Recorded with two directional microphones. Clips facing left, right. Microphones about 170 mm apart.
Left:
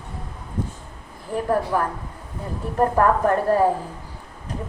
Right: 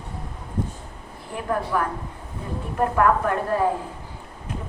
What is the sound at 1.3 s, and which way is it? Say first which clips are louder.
A woman's voice: left 4 dB; 35° left (ahead or behind).